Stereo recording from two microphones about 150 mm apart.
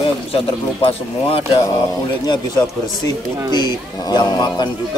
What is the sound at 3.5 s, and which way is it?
A man's voice, 30° left (ahead or behind).